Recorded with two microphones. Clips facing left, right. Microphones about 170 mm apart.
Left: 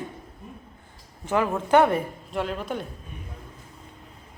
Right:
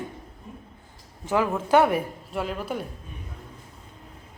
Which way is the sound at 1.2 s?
10° right (ahead or behind).